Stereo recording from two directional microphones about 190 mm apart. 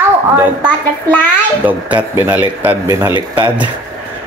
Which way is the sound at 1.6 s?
10° right (ahead or behind).